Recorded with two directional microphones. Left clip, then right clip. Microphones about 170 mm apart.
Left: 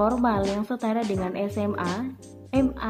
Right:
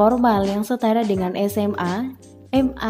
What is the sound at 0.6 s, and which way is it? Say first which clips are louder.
Speech: right 7 dB; 35° right (ahead or behind).